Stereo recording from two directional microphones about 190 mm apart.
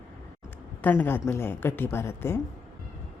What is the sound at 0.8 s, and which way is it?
A woman's voice, 10° left (ahead or behind).